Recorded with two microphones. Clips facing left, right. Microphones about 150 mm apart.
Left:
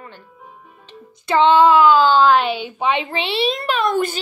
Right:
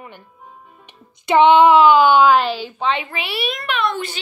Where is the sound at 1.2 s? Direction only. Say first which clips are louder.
Right 2 dB; 20° right (ahead or behind).